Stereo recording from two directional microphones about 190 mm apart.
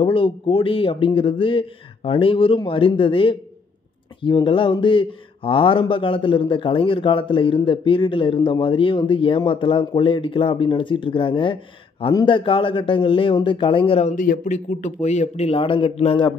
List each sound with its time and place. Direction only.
0.0 s speech: 25° left (ahead or behind)
14.1 s speech: 45° left (ahead or behind)